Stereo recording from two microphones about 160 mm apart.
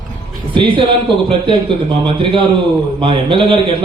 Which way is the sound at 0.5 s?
30° right (ahead or behind).